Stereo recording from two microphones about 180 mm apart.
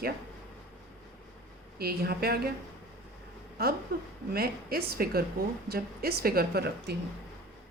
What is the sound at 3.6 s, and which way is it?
A woman's voice, 60° right (ahead or behind).